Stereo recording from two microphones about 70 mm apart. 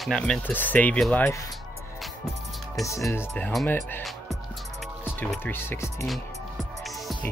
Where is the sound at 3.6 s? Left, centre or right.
Left.